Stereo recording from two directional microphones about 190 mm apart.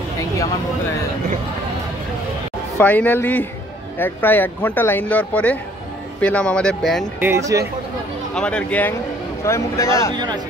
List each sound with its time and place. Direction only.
2.8 s speech: 10° left (ahead or behind)
7.2 s speech: 15° right (ahead or behind)
8.4 s speech: 5° left (ahead or behind)
10.1 s speech: 20° right (ahead or behind)